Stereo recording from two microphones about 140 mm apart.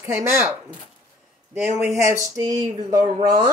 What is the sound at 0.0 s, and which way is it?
Speech, 15° right (ahead or behind).